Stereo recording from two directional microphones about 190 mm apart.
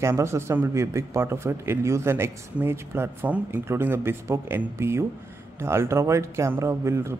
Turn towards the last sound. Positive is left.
turn(degrees=-15)  # may be behind; listen again after turning